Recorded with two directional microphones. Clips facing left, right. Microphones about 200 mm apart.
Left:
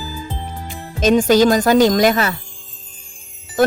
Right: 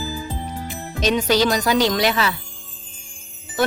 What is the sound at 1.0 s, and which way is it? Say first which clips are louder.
Speech: left 6 dB; 50° left (ahead or behind).